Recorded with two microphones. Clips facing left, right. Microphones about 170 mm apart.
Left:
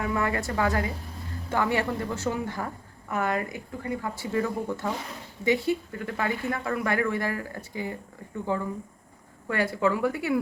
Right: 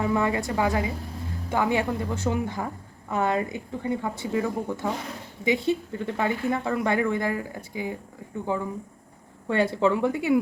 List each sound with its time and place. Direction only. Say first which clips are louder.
0.0 s a woman's voice: right 3 dB; 25° right (ahead or behind)
9.5 s speech: right 3 dB; 25° right (ahead or behind)